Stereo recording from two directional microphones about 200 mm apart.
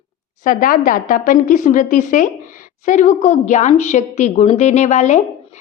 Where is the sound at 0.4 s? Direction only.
45° left (ahead or behind).